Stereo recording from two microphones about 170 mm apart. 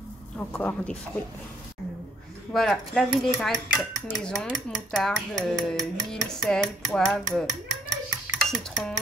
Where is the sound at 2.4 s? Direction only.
5° left (ahead or behind).